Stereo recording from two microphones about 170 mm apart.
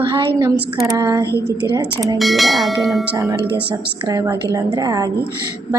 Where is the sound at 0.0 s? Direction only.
30° right (ahead or behind).